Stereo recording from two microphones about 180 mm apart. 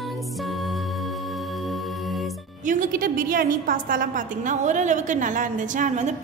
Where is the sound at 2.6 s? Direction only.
45° right (ahead or behind).